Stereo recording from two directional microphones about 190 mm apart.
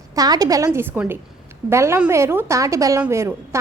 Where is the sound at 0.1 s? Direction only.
20° right (ahead or behind).